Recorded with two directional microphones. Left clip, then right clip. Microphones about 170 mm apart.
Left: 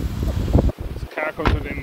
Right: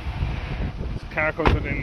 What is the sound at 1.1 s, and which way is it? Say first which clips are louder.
Speech: right 1 dB; 15° left (ahead or behind).